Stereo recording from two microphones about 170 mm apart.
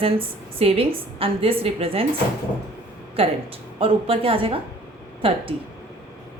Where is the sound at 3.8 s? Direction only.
30° right (ahead or behind).